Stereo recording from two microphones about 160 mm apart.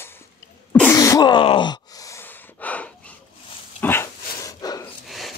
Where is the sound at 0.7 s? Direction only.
5° left (ahead or behind).